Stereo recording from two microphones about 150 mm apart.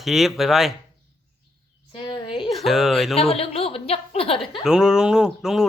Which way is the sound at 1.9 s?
35° left (ahead or behind).